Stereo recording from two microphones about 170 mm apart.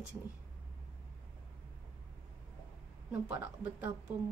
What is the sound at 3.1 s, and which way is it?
Speech, 10° right (ahead or behind).